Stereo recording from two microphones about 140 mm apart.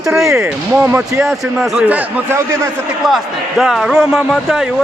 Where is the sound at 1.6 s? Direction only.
5° right (ahead or behind).